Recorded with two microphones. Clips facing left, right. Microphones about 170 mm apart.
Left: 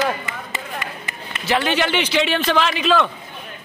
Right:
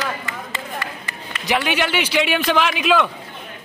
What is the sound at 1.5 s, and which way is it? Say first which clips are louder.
A man's voice: left 1 dB; 10° right (ahead or behind).